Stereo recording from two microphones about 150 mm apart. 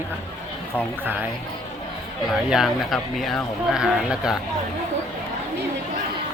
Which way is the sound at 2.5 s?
Centre (ahead or behind).